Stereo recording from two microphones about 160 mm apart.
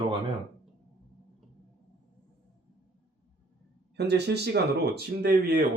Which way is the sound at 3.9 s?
90° right.